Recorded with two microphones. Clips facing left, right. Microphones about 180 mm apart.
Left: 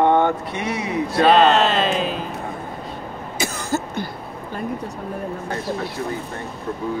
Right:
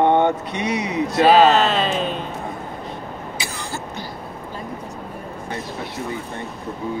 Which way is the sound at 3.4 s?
45° left (ahead or behind).